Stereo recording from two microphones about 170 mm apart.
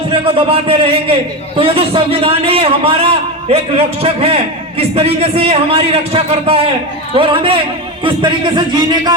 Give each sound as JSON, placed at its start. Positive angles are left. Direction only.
{"t": 0.1, "sound": "a man's voice", "side_deg": -30}